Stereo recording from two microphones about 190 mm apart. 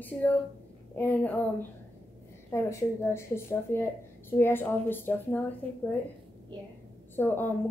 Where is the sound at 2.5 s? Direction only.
15° left (ahead or behind).